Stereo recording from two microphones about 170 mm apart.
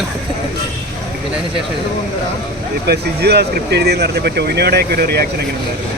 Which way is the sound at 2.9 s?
70° right (ahead or behind).